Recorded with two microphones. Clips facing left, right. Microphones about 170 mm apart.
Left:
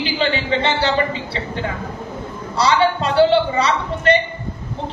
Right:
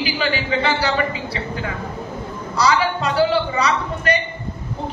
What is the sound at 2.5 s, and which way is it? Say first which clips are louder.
A man's voice: left 2 dB; 25° left (ahead or behind).